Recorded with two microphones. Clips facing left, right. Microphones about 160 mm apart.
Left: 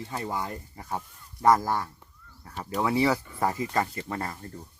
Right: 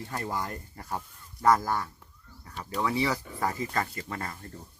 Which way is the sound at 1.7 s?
25° left (ahead or behind).